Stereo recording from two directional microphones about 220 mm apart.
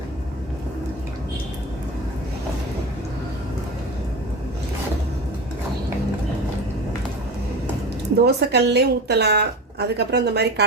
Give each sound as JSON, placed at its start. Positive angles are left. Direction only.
{"t": 8.2, "sound": "a woman's voice", "side_deg": -50}